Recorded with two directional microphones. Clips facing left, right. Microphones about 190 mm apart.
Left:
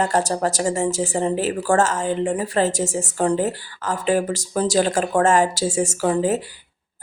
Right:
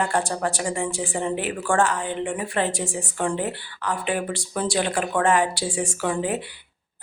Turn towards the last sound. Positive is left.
turn(degrees=40)  # may be behind; listen again after turning